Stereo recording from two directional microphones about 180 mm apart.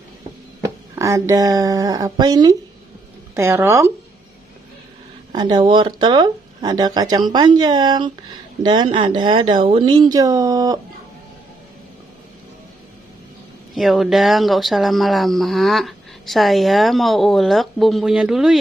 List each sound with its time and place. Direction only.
0.6 s speech: 15° right (ahead or behind)
5.3 s speech: 25° right (ahead or behind)
13.7 s speech: centre (ahead or behind)